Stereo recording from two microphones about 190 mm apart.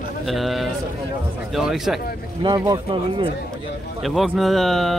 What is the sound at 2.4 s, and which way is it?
Speech, 20° right (ahead or behind).